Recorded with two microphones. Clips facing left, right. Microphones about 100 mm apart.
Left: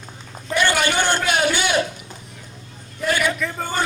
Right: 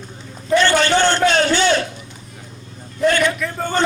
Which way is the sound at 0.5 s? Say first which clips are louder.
Right 5 dB; 10° left (ahead or behind).